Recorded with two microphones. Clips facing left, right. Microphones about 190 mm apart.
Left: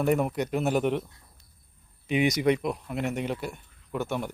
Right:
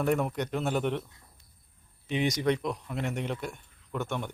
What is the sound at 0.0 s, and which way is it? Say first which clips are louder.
Speech: left 3 dB; 5° left (ahead or behind).